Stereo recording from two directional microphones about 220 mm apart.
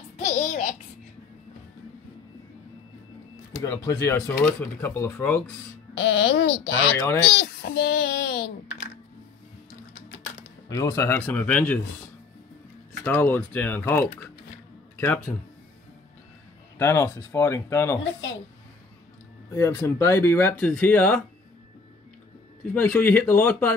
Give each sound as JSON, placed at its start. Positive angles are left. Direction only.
{"t": 0.2, "sound": "babbling", "side_deg": 30}
{"t": 3.6, "sound": "speech", "side_deg": 15}
{"t": 5.9, "sound": "speech", "side_deg": 60}
{"t": 7.3, "sound": "a sound", "side_deg": 45}
{"t": 10.7, "sound": "speech", "side_deg": 15}
{"t": 13.0, "sound": "speech", "side_deg": 10}
{"t": 16.7, "sound": "speech", "side_deg": 10}
{"t": 19.5, "sound": "speech", "side_deg": 15}
{"t": 22.8, "sound": "speech", "side_deg": 10}